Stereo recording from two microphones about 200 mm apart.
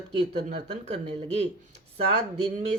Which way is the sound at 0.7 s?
35° right (ahead or behind).